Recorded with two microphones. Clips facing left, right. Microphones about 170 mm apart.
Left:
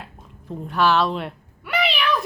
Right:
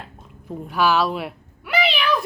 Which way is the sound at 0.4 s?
5° right (ahead or behind).